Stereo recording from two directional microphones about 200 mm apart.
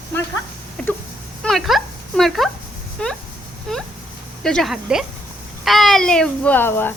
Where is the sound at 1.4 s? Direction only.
Centre (ahead or behind).